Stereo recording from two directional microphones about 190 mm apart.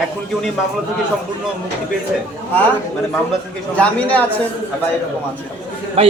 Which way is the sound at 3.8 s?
10° left (ahead or behind).